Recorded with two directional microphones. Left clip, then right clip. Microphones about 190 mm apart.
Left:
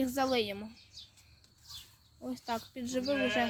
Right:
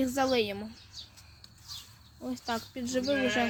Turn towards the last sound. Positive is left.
turn(degrees=35)  # may be behind; listen again after turning